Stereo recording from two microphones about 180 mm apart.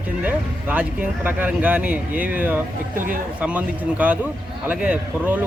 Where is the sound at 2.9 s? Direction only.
50° right (ahead or behind).